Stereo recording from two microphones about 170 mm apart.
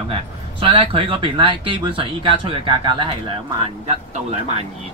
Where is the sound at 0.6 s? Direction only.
30° right (ahead or behind).